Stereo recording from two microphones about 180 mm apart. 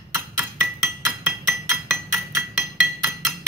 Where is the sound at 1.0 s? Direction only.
10° right (ahead or behind).